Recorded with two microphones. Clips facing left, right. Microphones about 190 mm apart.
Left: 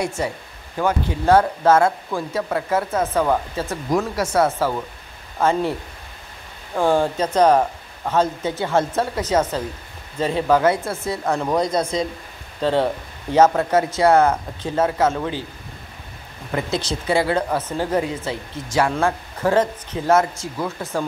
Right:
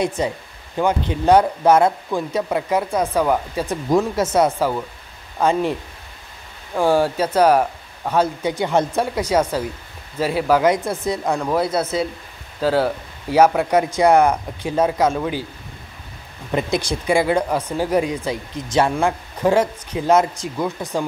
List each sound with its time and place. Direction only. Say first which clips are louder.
0.0 s speech: right 3 dB; 20° right (ahead or behind)
11.3 s speech: left 2 dB; 5° right (ahead or behind)
16.5 s speech: right 3 dB; 15° right (ahead or behind)